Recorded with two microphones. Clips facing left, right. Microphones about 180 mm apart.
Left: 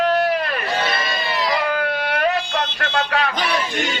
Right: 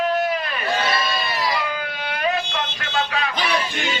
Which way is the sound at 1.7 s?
60° left (ahead or behind).